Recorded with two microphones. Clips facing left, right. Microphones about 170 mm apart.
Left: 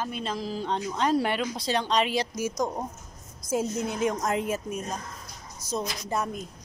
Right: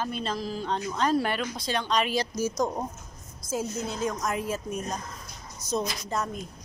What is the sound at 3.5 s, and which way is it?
A woman's voice, 20° left (ahead or behind).